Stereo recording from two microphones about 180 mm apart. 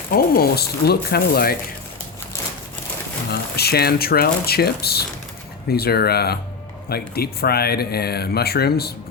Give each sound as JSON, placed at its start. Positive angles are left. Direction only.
{"t": 0.1, "sound": "speech", "side_deg": 55}
{"t": 3.2, "sound": "speech", "side_deg": 60}